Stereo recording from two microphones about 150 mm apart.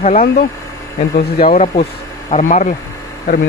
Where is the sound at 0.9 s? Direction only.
75° left (ahead or behind).